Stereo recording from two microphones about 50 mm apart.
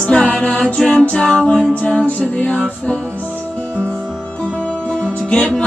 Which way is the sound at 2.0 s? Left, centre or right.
Left.